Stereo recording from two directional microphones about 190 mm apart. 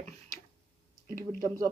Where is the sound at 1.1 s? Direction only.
45° right (ahead or behind).